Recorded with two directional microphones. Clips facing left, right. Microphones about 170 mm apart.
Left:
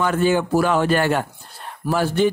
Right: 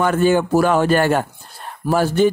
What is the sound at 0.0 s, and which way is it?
Speech, 45° right (ahead or behind).